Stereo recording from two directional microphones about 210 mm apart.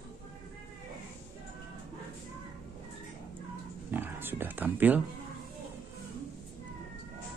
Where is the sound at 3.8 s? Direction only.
10° right (ahead or behind).